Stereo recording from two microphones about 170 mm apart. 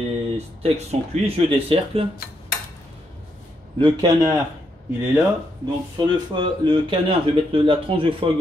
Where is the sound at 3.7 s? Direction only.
25° right (ahead or behind).